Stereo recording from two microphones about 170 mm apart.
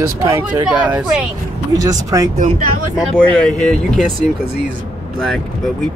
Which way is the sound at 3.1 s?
5° left (ahead or behind).